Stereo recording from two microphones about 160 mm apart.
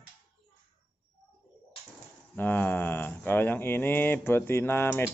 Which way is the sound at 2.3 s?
10° left (ahead or behind).